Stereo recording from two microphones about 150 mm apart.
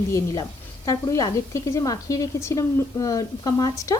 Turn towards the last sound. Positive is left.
turn(degrees=20)  # may be behind; listen again after turning